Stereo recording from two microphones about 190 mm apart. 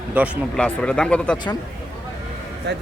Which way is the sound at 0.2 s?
10° right (ahead or behind).